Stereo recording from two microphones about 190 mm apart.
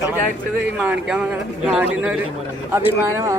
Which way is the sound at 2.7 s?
15° right (ahead or behind).